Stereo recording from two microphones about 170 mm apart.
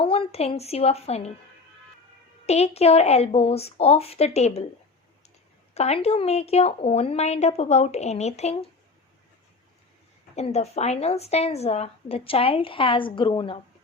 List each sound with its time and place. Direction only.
0.0 s a woman's voice: 35° left (ahead or behind)
2.5 s a woman's voice: 40° left (ahead or behind)
5.7 s a woman's voice: 35° left (ahead or behind)
10.3 s a woman's voice: 40° left (ahead or behind)